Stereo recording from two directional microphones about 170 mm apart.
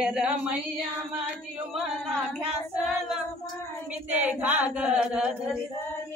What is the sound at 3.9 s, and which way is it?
Chant, 5° right (ahead or behind).